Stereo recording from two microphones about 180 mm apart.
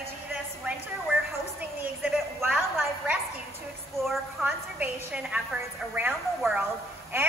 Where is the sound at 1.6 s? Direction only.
10° right (ahead or behind).